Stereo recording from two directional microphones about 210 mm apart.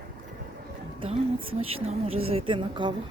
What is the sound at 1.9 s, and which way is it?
A woman's voice, 30° right (ahead or behind).